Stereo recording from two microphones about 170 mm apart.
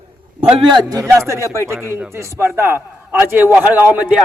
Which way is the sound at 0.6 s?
25° right (ahead or behind).